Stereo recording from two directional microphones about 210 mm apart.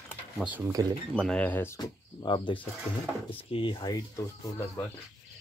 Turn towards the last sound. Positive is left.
turn(degrees=15)  # may be behind; listen again after turning